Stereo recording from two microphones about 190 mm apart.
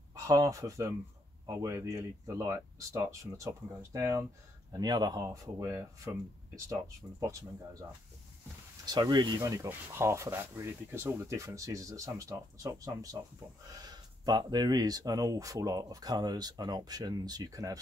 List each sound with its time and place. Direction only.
0.1 s speech: 20° right (ahead or behind)